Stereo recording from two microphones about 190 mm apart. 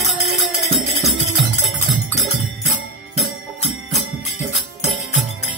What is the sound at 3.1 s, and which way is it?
Music, 35° left (ahead or behind).